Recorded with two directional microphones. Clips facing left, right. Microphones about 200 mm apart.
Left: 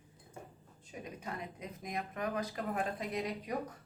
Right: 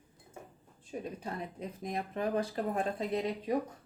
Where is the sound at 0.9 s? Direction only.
30° right (ahead or behind).